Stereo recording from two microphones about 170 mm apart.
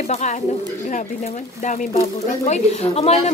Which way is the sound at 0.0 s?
45° left (ahead or behind).